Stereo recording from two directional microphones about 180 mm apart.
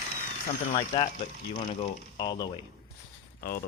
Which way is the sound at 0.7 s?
30° left (ahead or behind).